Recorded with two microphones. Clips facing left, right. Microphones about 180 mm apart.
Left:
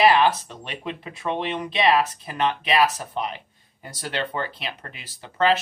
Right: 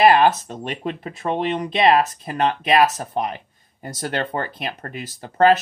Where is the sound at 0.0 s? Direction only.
50° right (ahead or behind).